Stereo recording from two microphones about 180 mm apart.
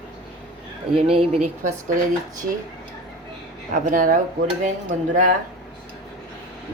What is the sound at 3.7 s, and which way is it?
Speech, 45° right (ahead or behind).